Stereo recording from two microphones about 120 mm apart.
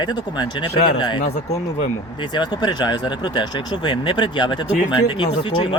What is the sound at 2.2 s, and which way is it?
Speech, 40° left (ahead or behind).